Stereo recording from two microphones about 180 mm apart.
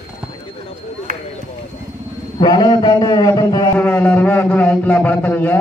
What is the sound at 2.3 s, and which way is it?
A man's voice, 25° left (ahead or behind).